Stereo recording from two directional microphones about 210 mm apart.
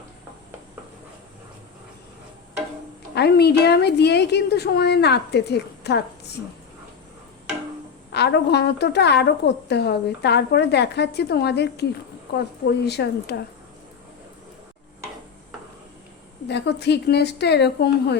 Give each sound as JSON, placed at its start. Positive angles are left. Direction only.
{"t": 3.2, "sound": "a woman's voice", "side_deg": 50}
{"t": 8.1, "sound": "a woman's voice", "side_deg": 55}
{"t": 16.5, "sound": "a woman's voice", "side_deg": 55}